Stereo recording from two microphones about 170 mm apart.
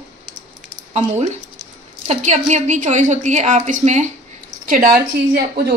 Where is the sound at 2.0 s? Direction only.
40° right (ahead or behind).